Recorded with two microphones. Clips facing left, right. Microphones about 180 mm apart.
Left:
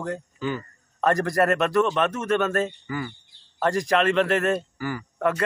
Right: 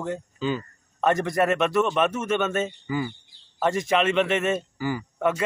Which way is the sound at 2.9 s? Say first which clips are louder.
Right 3 dB; 20° right (ahead or behind).